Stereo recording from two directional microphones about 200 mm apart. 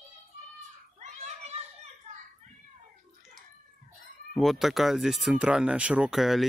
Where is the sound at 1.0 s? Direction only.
35° right (ahead or behind).